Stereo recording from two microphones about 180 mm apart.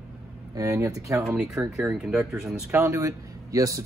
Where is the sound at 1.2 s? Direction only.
5° right (ahead or behind).